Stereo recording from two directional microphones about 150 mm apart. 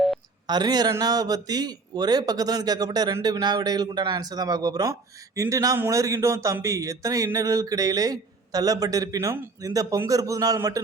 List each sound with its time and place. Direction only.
0.4 s a man's voice: 25° right (ahead or behind)